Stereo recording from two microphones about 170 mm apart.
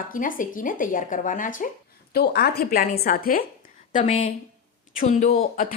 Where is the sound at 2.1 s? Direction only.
70° left (ahead or behind); by 5.6 s 50° left (ahead or behind).